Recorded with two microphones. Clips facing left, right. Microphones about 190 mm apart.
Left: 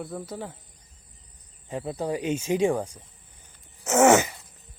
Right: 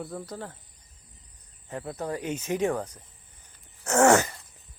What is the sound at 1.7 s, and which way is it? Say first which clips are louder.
Speech: left 4 dB; 15° left (ahead or behind).